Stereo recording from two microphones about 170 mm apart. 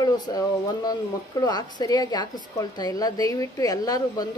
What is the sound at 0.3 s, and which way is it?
A woman's voice, 20° left (ahead or behind).